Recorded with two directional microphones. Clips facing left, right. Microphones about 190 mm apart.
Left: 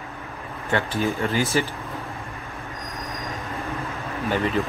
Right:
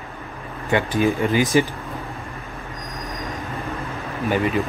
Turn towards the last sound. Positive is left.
turn(degrees=-15)  # may be behind; listen again after turning